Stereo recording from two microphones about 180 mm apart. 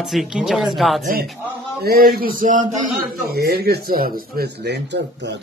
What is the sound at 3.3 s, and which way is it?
Speech, 60° right (ahead or behind).